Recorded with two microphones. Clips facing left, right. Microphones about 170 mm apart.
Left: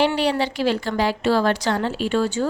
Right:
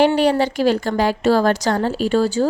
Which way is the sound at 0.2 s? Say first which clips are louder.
Right 5 dB; 45° right (ahead or behind).